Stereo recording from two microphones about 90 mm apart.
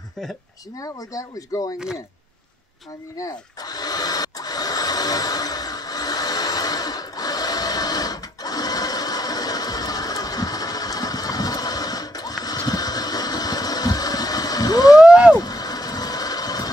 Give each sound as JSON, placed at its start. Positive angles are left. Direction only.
{"t": 0.7, "sound": "speech", "side_deg": 40}
{"t": 3.2, "sound": "a sound", "side_deg": 45}
{"t": 15.0, "sound": "vehicle", "side_deg": -15}
{"t": 15.3, "sound": "vehicle", "side_deg": 45}